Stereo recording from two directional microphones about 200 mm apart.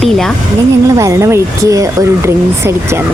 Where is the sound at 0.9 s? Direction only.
15° right (ahead or behind).